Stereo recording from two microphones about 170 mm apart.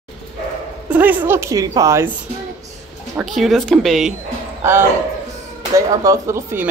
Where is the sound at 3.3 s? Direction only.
Centre (ahead or behind).